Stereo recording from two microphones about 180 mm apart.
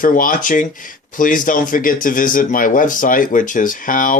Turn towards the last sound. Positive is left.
turn(degrees=50)  # may be behind; listen again after turning